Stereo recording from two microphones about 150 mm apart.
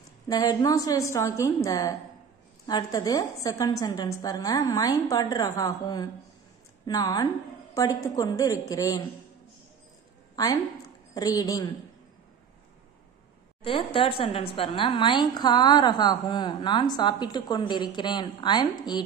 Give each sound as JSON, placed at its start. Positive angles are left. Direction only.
{"t": 0.3, "sound": "a woman's voice", "side_deg": 25}
{"t": 10.3, "sound": "a woman's voice", "side_deg": 25}
{"t": 13.7, "sound": "a woman's voice", "side_deg": 35}